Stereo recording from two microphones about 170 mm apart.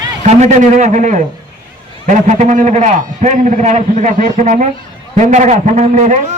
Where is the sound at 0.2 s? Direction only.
45° right (ahead or behind).